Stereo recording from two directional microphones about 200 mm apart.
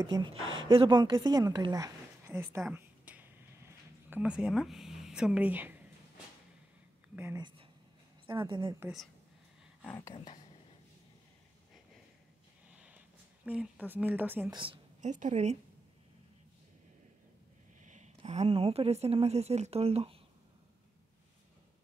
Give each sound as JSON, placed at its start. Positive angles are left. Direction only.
{"t": 0.0, "sound": "speech", "side_deg": -20}
{"t": 0.4, "sound": "speech", "side_deg": -75}
{"t": 0.7, "sound": "a woman's voice", "side_deg": -25}
{"t": 2.7, "sound": "a sound", "side_deg": -10}
{"t": 7.2, "sound": "speech", "side_deg": -10}
{"t": 8.5, "sound": "speech", "side_deg": -25}
{"t": 9.8, "sound": "speech", "side_deg": 10}
{"t": 10.1, "sound": "speech", "side_deg": 25}
{"t": 12.7, "sound": "a sound", "side_deg": -5}
{"t": 13.5, "sound": "speech", "side_deg": -5}
{"t": 14.5, "sound": "a woman's voice", "side_deg": -25}
{"t": 17.8, "sound": "a woman's voice", "side_deg": -35}